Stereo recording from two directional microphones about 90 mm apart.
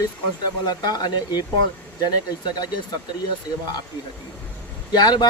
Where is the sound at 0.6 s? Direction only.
50° left (ahead or behind).